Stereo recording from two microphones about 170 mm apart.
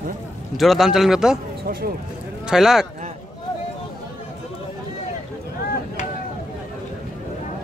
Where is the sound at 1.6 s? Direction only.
60° right (ahead or behind).